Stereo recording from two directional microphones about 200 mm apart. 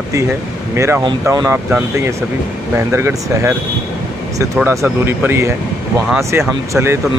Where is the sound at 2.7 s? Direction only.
15° right (ahead or behind).